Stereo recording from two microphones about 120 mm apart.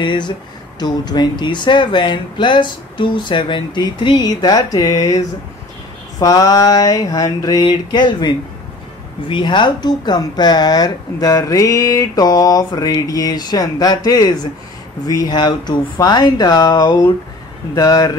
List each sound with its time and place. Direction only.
0.0 s speech: 40° left (ahead or behind)